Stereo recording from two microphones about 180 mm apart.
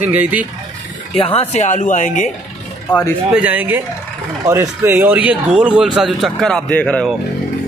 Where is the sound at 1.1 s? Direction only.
30° left (ahead or behind).